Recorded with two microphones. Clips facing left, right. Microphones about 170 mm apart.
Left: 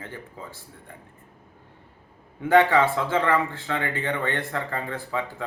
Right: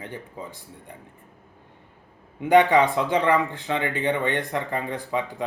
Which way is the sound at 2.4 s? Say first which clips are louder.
Right 1 dB; 15° right (ahead or behind).